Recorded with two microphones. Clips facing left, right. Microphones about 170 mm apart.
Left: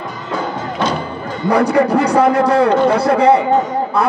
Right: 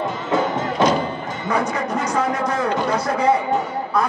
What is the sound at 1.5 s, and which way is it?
A man's voice, 65° left (ahead or behind).